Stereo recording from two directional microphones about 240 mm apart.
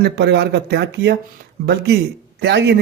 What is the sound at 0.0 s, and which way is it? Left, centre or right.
Speech, right.